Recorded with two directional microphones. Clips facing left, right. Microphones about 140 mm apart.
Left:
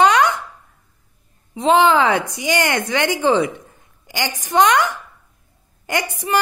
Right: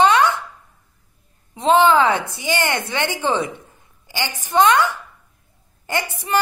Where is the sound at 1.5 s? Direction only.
15° left (ahead or behind).